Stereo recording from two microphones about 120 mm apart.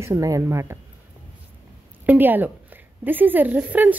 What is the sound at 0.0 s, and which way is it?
Speech, 25° right (ahead or behind).